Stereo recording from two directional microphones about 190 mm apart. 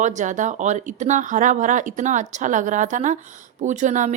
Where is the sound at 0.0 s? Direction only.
40° right (ahead or behind).